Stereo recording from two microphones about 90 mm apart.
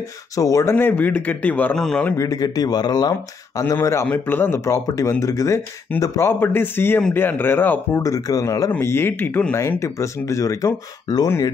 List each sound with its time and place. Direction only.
0.4 s speech: 35° left (ahead or behind)
0.7 s a man's voice: 20° left (ahead or behind)
2.1 s speech: 40° left (ahead or behind)
3.7 s speech: 30° left (ahead or behind)
8.0 s speech: 40° left (ahead or behind)
8.7 s speech: 25° left (ahead or behind); by 11.2 s 40° left (ahead or behind)